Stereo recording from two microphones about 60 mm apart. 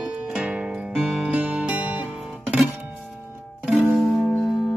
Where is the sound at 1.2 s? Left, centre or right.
Right.